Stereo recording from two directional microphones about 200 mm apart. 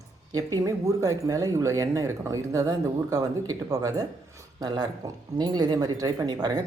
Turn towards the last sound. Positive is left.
turn(degrees=-20)  # may be behind; listen again after turning